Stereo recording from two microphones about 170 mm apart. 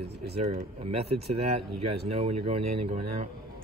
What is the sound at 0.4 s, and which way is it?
Speech, 35° right (ahead or behind).